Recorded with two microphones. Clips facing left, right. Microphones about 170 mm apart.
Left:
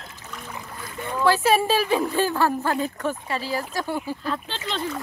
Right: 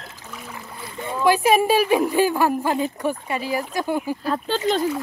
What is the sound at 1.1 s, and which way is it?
Speech, 15° right (ahead or behind).